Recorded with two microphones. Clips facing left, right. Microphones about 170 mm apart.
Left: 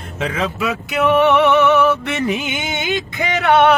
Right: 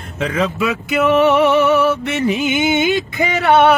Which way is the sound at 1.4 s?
35° right (ahead or behind).